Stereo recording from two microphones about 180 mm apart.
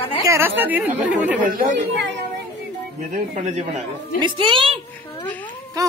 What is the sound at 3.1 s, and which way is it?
Speech, 40° right (ahead or behind).